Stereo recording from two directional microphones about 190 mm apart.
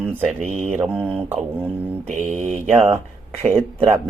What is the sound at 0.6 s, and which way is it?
Mantra, 35° right (ahead or behind).